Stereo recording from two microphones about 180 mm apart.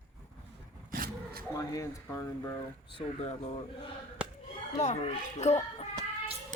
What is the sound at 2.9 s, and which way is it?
Speech, 30° left (ahead or behind).